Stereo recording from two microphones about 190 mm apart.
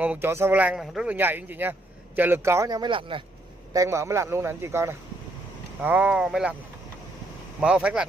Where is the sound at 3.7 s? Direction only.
15° right (ahead or behind).